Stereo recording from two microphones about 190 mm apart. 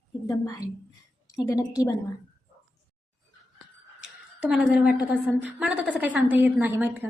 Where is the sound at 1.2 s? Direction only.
15° left (ahead or behind).